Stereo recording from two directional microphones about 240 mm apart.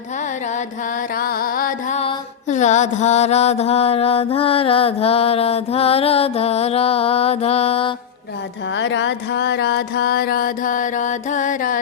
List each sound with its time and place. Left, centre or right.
0.2 s carnatic music: left
8.7 s music: left